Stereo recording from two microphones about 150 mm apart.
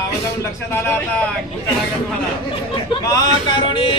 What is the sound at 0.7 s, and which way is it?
Speech, 15° left (ahead or behind).